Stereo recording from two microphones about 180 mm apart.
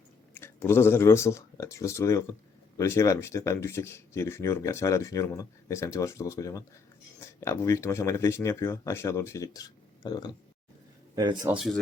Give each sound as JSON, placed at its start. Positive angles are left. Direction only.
{"t": 0.3, "sound": "speech", "side_deg": 15}
{"t": 11.1, "sound": "speech", "side_deg": -25}
{"t": 11.4, "sound": "speech", "side_deg": -5}